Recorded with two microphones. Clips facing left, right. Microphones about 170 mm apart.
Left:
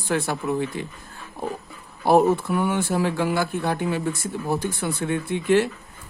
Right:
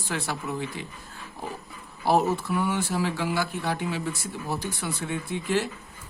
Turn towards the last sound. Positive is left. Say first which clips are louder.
# left 7 dB
turn(degrees=60)  # may be behind; listen again after turning